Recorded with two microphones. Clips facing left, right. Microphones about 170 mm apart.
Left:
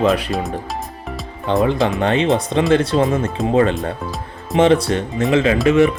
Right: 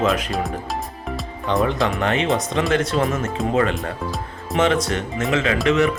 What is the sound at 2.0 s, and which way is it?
Speech, 30° left (ahead or behind).